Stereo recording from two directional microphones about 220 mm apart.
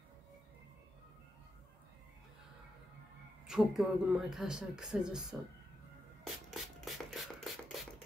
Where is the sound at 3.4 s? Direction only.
Centre (ahead or behind).